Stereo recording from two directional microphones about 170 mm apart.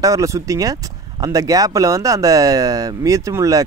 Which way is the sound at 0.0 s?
20° right (ahead or behind).